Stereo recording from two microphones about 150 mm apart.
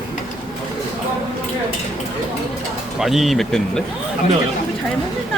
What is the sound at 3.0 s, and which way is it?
Speech, centre (ahead or behind).